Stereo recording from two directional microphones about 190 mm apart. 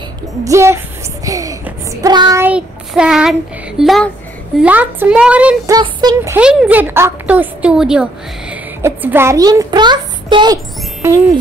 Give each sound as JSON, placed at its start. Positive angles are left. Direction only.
{"t": 0.4, "sound": "a child's voice", "side_deg": -15}
{"t": 5.7, "sound": "a sound", "side_deg": -20}
{"t": 6.3, "sound": "a woman's voice", "side_deg": -10}